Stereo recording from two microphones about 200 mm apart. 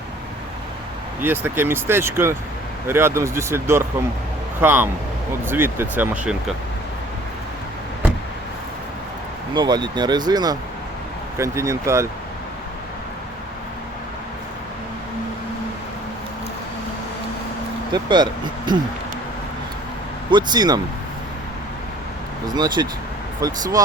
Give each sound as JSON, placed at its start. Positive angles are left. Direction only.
{"t": 1.2, "sound": "speech", "side_deg": -10}
{"t": 9.6, "sound": "speech", "side_deg": -20}
{"t": 17.9, "sound": "speech", "side_deg": -20}
{"t": 20.3, "sound": "speech", "side_deg": -20}
{"t": 22.4, "sound": "speech", "side_deg": -20}